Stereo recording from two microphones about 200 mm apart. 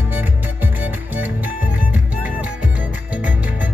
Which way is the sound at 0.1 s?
10° right (ahead or behind).